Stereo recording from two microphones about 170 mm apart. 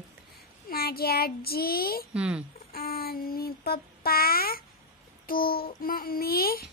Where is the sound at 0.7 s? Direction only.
65° left (ahead or behind).